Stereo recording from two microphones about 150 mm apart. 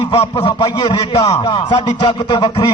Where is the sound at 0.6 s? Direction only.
25° left (ahead or behind).